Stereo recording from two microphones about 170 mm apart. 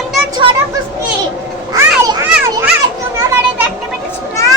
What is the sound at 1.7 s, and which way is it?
Children playing, 20° right (ahead or behind).